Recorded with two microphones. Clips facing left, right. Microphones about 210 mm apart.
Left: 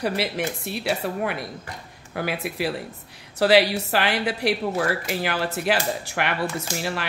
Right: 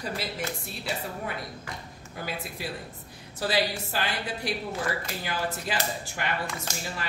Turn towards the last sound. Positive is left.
turn(degrees=75)  # may be behind; listen again after turning